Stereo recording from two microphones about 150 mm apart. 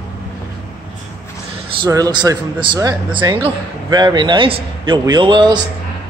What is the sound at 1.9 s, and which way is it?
A man's voice, 20° right (ahead or behind).